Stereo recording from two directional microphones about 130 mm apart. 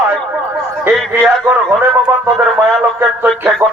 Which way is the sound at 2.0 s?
15° right (ahead or behind).